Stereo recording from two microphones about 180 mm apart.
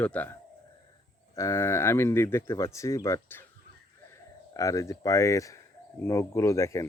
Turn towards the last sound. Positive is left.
turn(degrees=15)  # may be behind; listen again after turning